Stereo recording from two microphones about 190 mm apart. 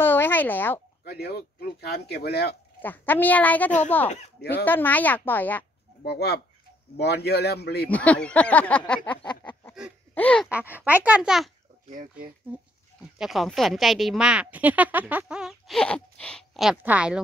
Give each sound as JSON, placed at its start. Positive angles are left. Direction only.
{"t": 0.0, "sound": "a sound", "side_deg": 10}
{"t": 1.0, "sound": "speech", "side_deg": 55}
{"t": 2.8, "sound": "speech", "side_deg": 10}
{"t": 6.0, "sound": "speech", "side_deg": 60}
{"t": 7.9, "sound": "speech", "side_deg": 5}
{"t": 9.5, "sound": "a sound", "side_deg": 15}
{"t": 10.1, "sound": "speech", "side_deg": 5}
{"t": 10.5, "sound": "a child's voice", "side_deg": -10}
{"t": 11.9, "sound": "speech", "side_deg": -45}
{"t": 13.2, "sound": "speech", "side_deg": 0}